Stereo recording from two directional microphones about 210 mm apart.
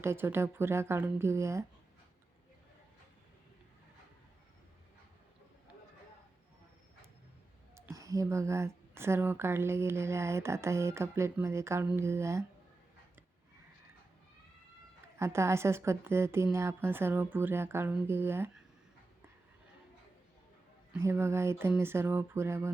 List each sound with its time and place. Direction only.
0.0 s speech: 10° right (ahead or behind)
7.8 s speech: 15° right (ahead or behind)
15.2 s speech: 15° right (ahead or behind)
21.0 s speech: 10° right (ahead or behind)